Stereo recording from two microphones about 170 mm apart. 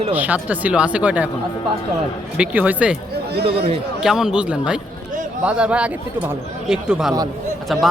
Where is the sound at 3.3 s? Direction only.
70° right (ahead or behind).